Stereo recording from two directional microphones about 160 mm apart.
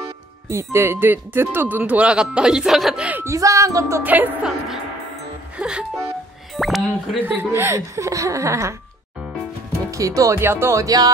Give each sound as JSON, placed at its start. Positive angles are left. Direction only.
{"t": 0.0, "sound": "speech", "side_deg": -15}
{"t": 5.6, "sound": "music", "side_deg": -5}
{"t": 6.5, "sound": "speech", "side_deg": 0}
{"t": 7.2, "sound": "speech", "side_deg": -15}
{"t": 9.8, "sound": "speech", "side_deg": -20}